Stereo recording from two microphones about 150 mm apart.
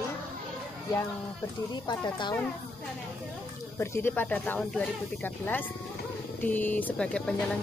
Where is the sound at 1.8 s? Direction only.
30° left (ahead or behind).